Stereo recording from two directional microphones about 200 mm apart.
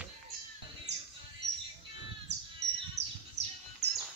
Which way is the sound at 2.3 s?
60° right (ahead or behind).